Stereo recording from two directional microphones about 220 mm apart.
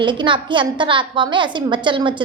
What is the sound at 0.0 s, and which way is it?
Speech, 20° right (ahead or behind).